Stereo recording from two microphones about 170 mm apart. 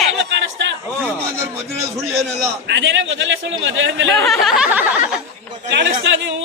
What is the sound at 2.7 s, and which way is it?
A man's voice, 90° right.